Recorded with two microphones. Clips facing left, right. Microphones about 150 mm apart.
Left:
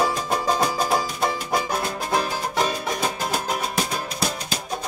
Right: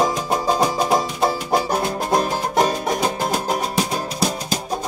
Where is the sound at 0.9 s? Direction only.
35° right (ahead or behind).